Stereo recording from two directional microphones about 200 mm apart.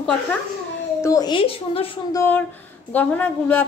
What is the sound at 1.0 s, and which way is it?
Speech, 20° left (ahead or behind).